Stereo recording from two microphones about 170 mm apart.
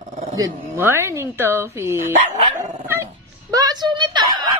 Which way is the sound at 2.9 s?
20° right (ahead or behind).